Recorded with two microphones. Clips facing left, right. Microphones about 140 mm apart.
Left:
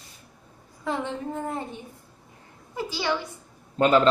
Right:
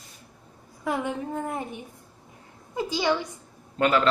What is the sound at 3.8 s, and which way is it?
Speech, 20° left (ahead or behind).